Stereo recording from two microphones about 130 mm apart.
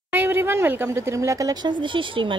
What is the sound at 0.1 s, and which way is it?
A woman's voice, 15° right (ahead or behind).